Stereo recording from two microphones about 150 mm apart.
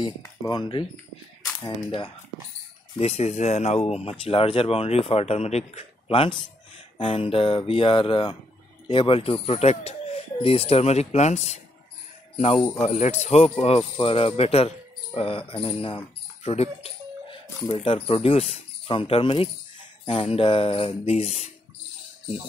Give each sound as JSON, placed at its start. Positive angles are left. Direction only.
{"t": 0.5, "sound": "speech", "side_deg": 30}
{"t": 3.0, "sound": "speech", "side_deg": 45}
{"t": 12.8, "sound": "speech", "side_deg": 50}
{"t": 16.4, "sound": "music", "side_deg": 45}
{"t": 17.8, "sound": "speech", "side_deg": 40}